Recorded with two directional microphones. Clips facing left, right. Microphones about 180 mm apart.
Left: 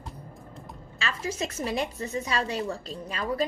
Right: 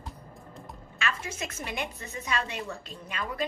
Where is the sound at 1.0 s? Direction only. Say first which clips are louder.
Left 3 dB; 30° left (ahead or behind).